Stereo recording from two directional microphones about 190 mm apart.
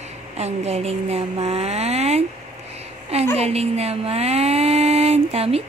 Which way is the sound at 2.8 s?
35° right (ahead or behind).